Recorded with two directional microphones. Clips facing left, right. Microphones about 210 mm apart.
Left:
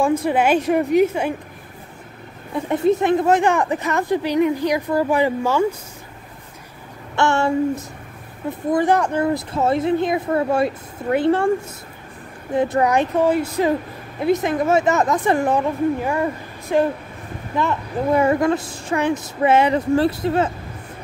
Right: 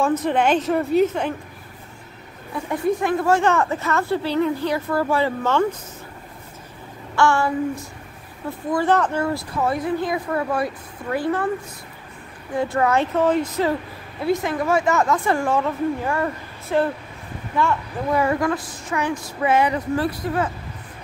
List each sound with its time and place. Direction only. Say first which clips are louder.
0.0 s speech: left 2 dB; 10° left (ahead or behind)
2.5 s speech: left 4 dB; 25° left (ahead or behind)
7.2 s speech: left 1 dB; 25° left (ahead or behind)
8.7 s speech: left 1 dB; 15° left (ahead or behind)
12.5 s speech: left 2 dB; 20° left (ahead or behind)